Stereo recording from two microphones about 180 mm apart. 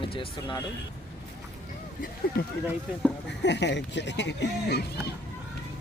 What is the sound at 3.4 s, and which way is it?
Speech, 75° left (ahead or behind).